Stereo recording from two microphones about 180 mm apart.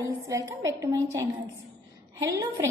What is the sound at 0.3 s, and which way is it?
A woman's voice, 15° right (ahead or behind).